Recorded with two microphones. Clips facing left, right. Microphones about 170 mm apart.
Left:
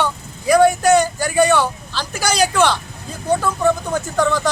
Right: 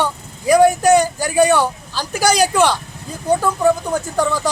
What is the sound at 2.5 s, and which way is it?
Speech, 10° right (ahead or behind).